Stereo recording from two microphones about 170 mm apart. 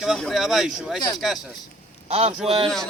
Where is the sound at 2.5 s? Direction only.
35° right (ahead or behind).